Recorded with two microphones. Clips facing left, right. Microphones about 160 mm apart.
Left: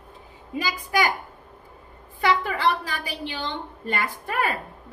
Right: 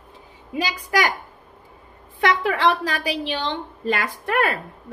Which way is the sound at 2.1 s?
85° right.